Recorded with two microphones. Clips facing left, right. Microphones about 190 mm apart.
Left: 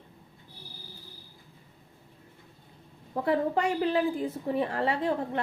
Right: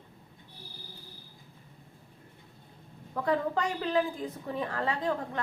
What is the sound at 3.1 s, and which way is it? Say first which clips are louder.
A woman's voice: left 2 dB; 30° left (ahead or behind).